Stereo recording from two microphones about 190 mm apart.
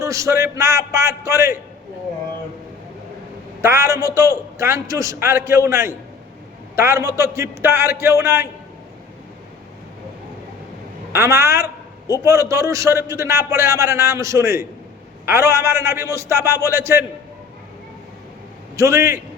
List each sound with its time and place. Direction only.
0.0 s a man's voice: 15° right (ahead or behind)
3.6 s a man's voice: 15° right (ahead or behind)
11.1 s a man's voice: 15° right (ahead or behind)
18.8 s a man's voice: 15° right (ahead or behind)